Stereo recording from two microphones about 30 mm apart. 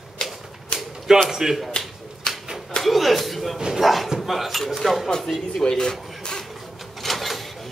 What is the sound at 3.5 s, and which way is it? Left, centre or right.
Speech, centre.